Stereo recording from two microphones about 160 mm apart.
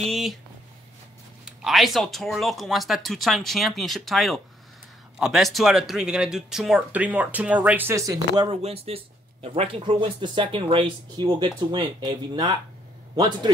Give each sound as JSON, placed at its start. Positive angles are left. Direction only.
{"t": 0.0, "sound": "speech", "side_deg": 0}
{"t": 1.4, "sound": "speech", "side_deg": 0}
{"t": 8.5, "sound": "a man's voice", "side_deg": -40}